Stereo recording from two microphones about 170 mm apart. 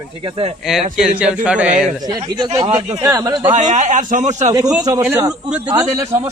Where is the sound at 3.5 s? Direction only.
45° right (ahead or behind).